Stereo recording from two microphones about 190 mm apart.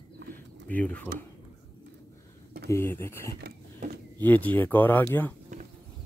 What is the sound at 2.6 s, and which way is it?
Speech, 15° left (ahead or behind).